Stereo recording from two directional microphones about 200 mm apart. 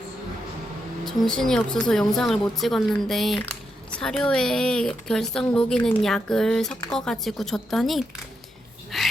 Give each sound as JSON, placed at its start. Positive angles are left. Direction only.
{"t": 1.0, "sound": "a woman's voice", "side_deg": 0}
{"t": 8.9, "sound": "dog", "side_deg": 0}